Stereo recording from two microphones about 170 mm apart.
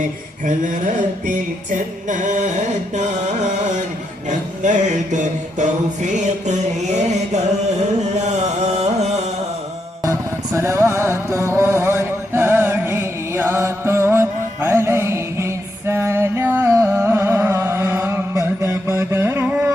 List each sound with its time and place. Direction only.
0.4 s music: 50° right (ahead or behind)
10.0 s music: 20° right (ahead or behind)